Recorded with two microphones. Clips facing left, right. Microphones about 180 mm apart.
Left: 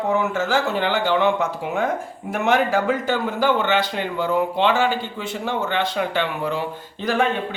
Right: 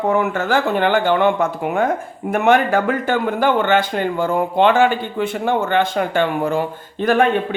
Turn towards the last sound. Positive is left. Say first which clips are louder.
# right 5 dB
turn(degrees=-55)  # may be behind; listen again after turning